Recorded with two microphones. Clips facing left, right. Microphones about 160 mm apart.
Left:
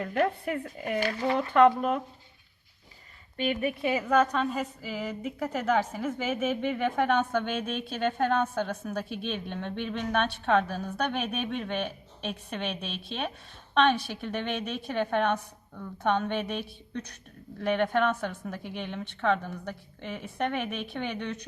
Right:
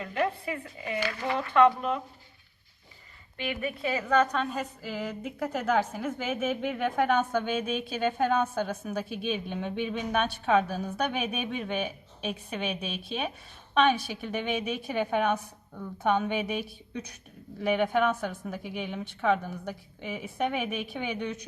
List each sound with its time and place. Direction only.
0.0 s a woman's voice: 50° left (ahead or behind)
3.6 s a woman's voice: 20° left (ahead or behind)
4.0 s a woman's voice: 5° left (ahead or behind)